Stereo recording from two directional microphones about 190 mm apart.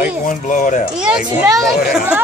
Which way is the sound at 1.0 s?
5° right (ahead or behind).